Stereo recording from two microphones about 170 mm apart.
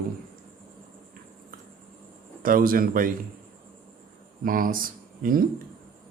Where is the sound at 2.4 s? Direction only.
55° right (ahead or behind).